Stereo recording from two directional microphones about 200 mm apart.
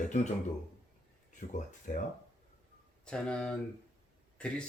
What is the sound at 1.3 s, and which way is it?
Speech, 40° left (ahead or behind).